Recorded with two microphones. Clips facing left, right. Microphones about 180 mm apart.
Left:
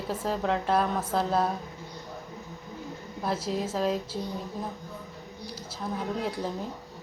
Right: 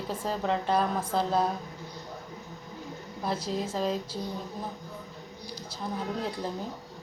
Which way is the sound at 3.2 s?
5° left (ahead or behind).